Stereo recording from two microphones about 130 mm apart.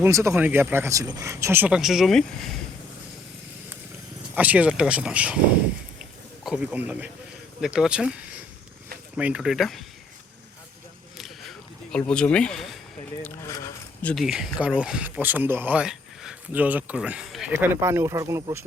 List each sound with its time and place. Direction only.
0.0 s speech: 20° right (ahead or behind)
1.7 s speech: centre (ahead or behind)
4.4 s speech: 10° right (ahead or behind)
6.0 s a sound: 5° right (ahead or behind)
7.6 s speech: 5° right (ahead or behind)
9.1 s speech: 5° right (ahead or behind)
11.9 s speech: 5° left (ahead or behind)
13.2 s speech: 25° left (ahead or behind)
14.0 s speech: 10° left (ahead or behind)
14.3 s speech: 5° right (ahead or behind)
17.5 s speech: 20° right (ahead or behind)